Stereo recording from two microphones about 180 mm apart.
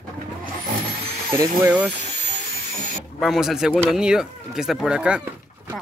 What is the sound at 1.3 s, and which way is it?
Speech, 15° right (ahead or behind).